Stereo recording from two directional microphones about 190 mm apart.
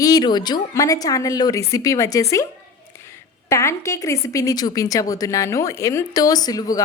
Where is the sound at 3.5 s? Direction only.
15° left (ahead or behind).